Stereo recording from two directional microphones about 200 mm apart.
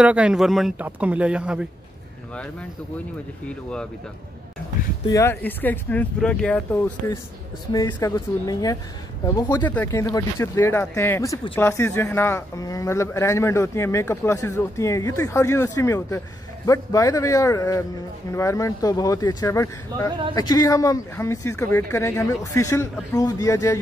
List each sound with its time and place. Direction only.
0.0 s speech: 5° right (ahead or behind)
3.4 s speech: 5° left (ahead or behind)
5.0 s speech: 15° left (ahead or behind)
9.6 s speech: 10° left (ahead or behind)